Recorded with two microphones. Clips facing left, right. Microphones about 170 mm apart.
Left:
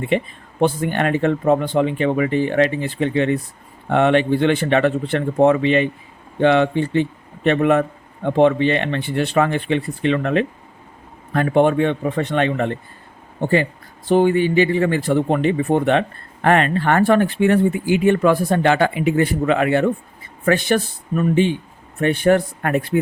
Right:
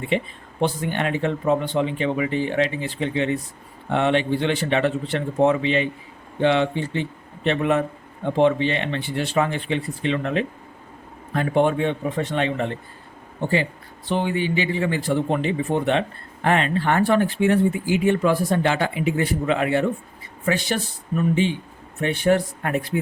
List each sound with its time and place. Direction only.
0.1 s speech: 55° left (ahead or behind)
14.1 s speech: 45° left (ahead or behind)